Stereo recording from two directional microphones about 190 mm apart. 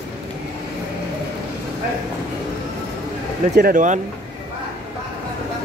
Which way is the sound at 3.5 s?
50° right (ahead or behind).